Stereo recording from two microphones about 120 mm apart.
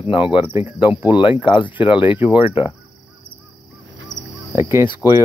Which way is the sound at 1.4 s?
40° left (ahead or behind).